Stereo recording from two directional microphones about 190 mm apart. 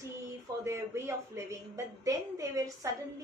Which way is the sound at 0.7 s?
15° right (ahead or behind).